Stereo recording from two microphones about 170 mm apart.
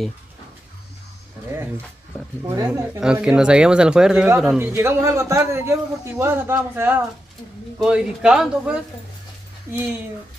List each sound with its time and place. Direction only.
2.4 s speech: 20° right (ahead or behind)
3.0 s speech: 5° right (ahead or behind)
4.6 s a man's voice: 15° right (ahead or behind)